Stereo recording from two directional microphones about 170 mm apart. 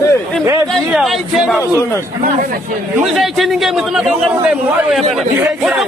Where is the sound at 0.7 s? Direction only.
Centre (ahead or behind).